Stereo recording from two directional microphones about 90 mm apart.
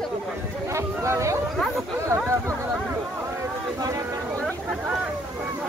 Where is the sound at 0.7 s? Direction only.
35° right (ahead or behind).